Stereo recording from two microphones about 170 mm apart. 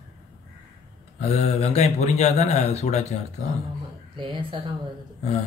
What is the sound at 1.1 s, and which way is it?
Speech, 40° left (ahead or behind).